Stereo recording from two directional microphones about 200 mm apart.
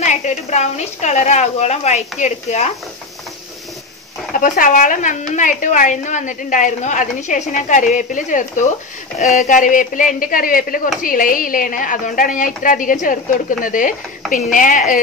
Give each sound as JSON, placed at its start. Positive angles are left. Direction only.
{"t": 0.0, "sound": "a woman's voice", "side_deg": 35}
{"t": 4.4, "sound": "a woman's voice", "side_deg": 40}